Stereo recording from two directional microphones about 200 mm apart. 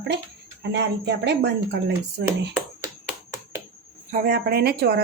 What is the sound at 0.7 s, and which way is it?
Speech, 60° right (ahead or behind).